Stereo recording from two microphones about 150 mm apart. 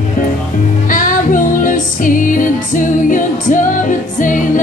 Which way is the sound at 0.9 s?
60° left (ahead or behind).